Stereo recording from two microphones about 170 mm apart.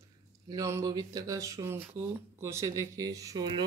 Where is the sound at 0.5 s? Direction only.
20° right (ahead or behind).